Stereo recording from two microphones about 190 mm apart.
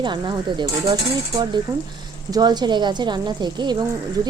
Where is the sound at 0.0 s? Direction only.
25° right (ahead or behind).